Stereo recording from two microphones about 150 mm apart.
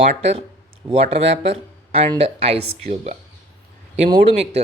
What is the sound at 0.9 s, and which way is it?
Speech, 40° right (ahead or behind).